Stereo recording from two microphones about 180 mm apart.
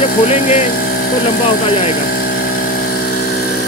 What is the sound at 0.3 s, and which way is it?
Speech, 40° left (ahead or behind).